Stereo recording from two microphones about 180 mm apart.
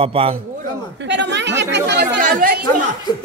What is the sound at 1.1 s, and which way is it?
Speech, 80° right.